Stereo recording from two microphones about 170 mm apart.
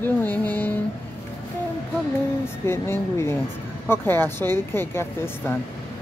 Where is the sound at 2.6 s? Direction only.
15° left (ahead or behind).